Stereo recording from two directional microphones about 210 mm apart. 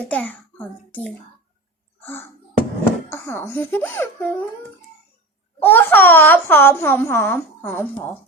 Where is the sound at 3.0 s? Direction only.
10° left (ahead or behind).